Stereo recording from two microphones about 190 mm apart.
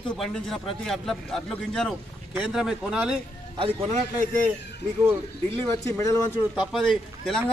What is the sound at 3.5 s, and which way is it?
Speech, 30° right (ahead or behind).